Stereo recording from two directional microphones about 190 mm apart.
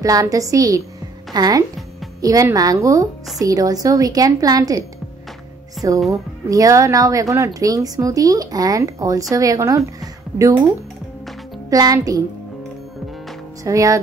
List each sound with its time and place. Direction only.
0.0 s a woman's voice: 15° right (ahead or behind)
5.8 s speech: centre (ahead or behind)
6.5 s a woman's voice: 15° right (ahead or behind)
11.7 s a woman's voice: 20° right (ahead or behind)
13.7 s a woman's voice: 15° right (ahead or behind)